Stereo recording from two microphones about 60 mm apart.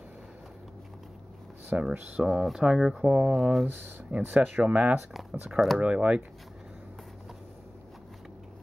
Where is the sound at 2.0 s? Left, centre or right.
Right.